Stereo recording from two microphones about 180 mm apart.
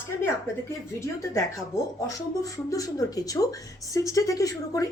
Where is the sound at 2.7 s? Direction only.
20° left (ahead or behind).